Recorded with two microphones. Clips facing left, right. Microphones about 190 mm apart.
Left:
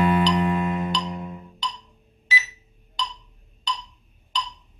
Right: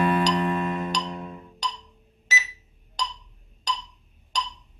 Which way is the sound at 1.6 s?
45° right (ahead or behind).